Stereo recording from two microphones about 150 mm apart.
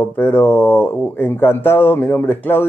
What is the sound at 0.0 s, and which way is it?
Speech, 15° left (ahead or behind).